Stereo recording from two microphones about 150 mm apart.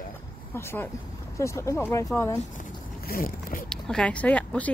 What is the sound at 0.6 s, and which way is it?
Speech, 15° left (ahead or behind).